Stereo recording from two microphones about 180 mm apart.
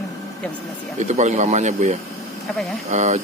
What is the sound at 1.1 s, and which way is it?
Speech, 40° right (ahead or behind).